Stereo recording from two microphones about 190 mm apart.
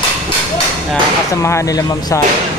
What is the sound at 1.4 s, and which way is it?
Speech, 15° left (ahead or behind).